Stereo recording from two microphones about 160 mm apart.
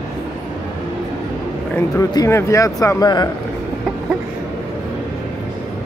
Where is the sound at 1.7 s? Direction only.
20° left (ahead or behind).